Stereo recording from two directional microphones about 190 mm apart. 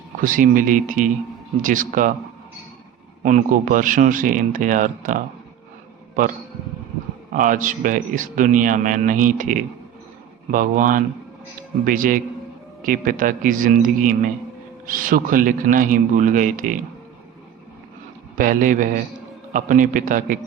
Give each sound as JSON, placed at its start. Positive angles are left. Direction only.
{"t": 0.2, "sound": "speech", "side_deg": -45}
{"t": 3.2, "sound": "speech", "side_deg": -45}
{"t": 7.3, "sound": "speech", "side_deg": -45}
{"t": 18.3, "sound": "speech", "side_deg": -45}